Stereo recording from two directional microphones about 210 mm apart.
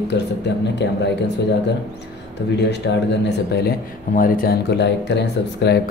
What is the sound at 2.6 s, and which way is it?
Speech, 55° left (ahead or behind).